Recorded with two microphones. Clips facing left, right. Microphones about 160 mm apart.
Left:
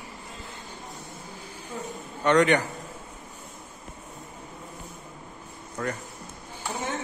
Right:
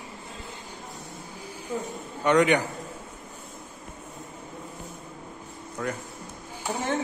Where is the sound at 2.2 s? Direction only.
10° right (ahead or behind).